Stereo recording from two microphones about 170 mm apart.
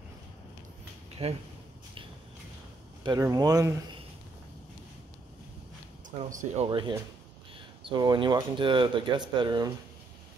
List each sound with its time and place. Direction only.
1.2 s speech: 35° right (ahead or behind)
3.0 s speech: 25° right (ahead or behind)
6.0 s speech: 50° right (ahead or behind); by 9.7 s 25° right (ahead or behind)